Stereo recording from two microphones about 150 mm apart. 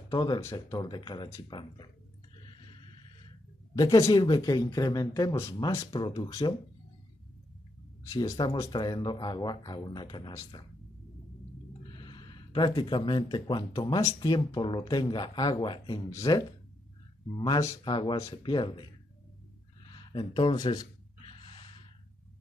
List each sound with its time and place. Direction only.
0.1 s speech: 30° left (ahead or behind)
3.7 s speech: 25° left (ahead or behind)
8.1 s speech: 30° left (ahead or behind)
11.9 s speech: 30° left (ahead or behind)
19.9 s gasp: 30° left (ahead or behind)